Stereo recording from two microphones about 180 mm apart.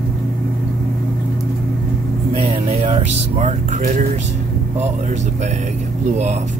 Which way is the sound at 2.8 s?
40° right (ahead or behind).